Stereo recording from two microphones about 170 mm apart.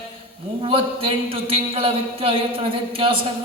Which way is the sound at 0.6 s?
30° right (ahead or behind).